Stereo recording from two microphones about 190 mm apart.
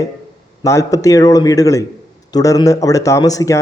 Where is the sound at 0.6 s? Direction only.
15° left (ahead or behind).